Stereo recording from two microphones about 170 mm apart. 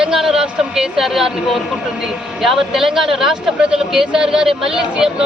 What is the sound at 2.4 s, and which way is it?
Speech, centre (ahead or behind).